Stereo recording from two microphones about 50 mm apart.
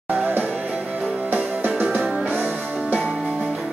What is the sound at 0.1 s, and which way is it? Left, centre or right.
Music, right.